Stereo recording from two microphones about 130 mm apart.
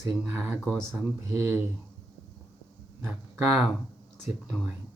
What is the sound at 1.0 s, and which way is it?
Speech, 15° right (ahead or behind).